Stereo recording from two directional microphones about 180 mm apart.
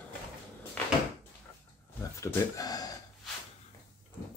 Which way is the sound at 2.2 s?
20° left (ahead or behind).